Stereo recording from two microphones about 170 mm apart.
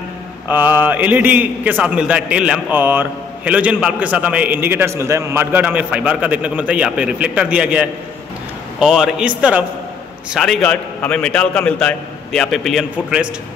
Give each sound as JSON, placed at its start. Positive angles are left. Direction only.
{"t": 0.5, "sound": "a man's voice", "side_deg": -10}